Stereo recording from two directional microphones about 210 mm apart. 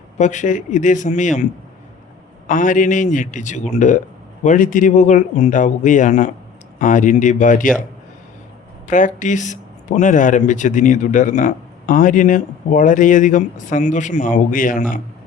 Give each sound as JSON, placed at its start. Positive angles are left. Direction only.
{"t": 0.2, "sound": "speech", "side_deg": 35}
{"t": 2.5, "sound": "speech", "side_deg": 40}
{"t": 8.9, "sound": "speech", "side_deg": 40}